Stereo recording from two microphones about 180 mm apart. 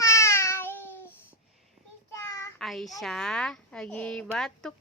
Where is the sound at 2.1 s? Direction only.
15° left (ahead or behind).